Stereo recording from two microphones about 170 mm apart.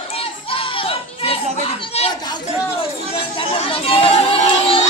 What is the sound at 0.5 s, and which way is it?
Music, 30° left (ahead or behind).